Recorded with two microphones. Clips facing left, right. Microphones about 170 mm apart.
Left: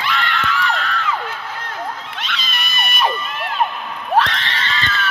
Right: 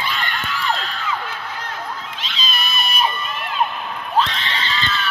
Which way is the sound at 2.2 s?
70° left (ahead or behind).